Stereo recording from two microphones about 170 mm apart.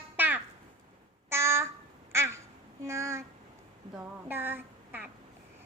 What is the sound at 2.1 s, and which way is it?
Quack, 15° right (ahead or behind).